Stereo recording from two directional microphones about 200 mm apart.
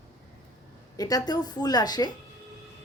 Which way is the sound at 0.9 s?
20° left (ahead or behind).